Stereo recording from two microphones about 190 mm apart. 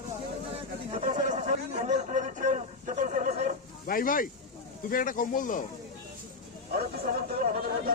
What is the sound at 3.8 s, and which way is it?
Speech, 45° left (ahead or behind).